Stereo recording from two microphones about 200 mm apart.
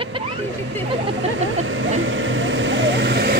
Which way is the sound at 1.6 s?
75° right (ahead or behind).